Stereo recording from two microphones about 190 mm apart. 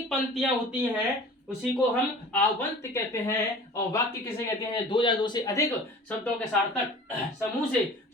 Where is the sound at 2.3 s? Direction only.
15° left (ahead or behind).